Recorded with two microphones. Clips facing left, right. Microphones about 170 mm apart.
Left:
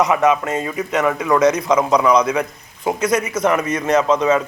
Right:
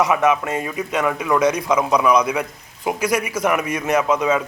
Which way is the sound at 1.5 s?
20° left (ahead or behind).